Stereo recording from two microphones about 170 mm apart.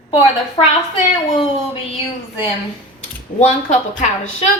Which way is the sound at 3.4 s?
45° left (ahead or behind).